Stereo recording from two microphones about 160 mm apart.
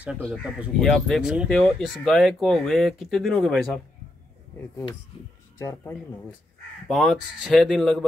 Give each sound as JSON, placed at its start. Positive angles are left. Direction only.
{"t": 0.0, "sound": "speech", "side_deg": -5}
{"t": 5.6, "sound": "speech", "side_deg": 20}
{"t": 6.9, "sound": "speech", "side_deg": 0}